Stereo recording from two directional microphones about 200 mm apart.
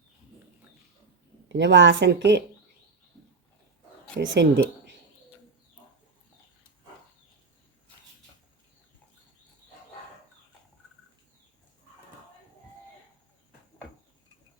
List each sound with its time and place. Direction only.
1.5 s a woman's voice: 65° right (ahead or behind)
4.2 s a woman's voice: 65° right (ahead or behind)